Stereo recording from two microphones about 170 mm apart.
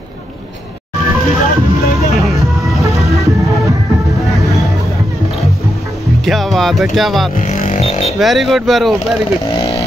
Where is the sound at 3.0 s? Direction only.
20° right (ahead or behind).